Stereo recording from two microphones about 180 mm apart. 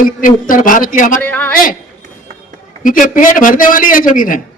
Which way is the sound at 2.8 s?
50° left (ahead or behind).